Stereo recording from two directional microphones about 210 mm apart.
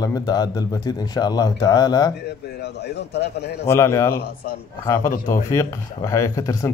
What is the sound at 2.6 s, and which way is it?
Speech, 50° left (ahead or behind).